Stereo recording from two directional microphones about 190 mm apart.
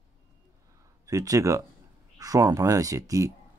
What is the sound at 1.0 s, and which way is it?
Speech, 15° right (ahead or behind).